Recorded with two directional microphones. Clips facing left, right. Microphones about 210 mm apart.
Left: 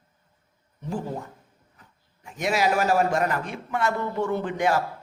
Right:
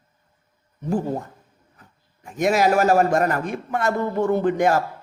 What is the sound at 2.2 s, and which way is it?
A man's voice, 45° right (ahead or behind).